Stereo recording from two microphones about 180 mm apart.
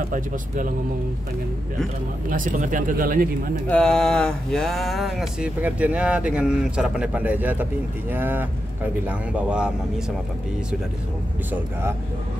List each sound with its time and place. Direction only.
2.2 s speech: 45° right (ahead or behind)
3.6 s speech: 5° left (ahead or behind)